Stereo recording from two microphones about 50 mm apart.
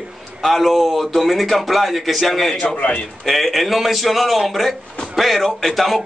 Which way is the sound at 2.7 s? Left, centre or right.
Left.